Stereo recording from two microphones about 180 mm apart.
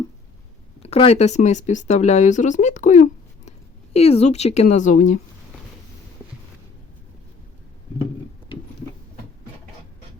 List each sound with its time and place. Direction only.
0.8 s speech: 35° left (ahead or behind)